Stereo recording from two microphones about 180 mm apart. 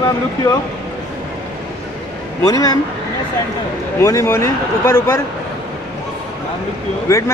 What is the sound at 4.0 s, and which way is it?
Speech, 20° left (ahead or behind).